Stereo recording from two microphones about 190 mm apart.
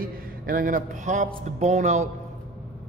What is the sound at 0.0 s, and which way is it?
Speech, 50° right (ahead or behind).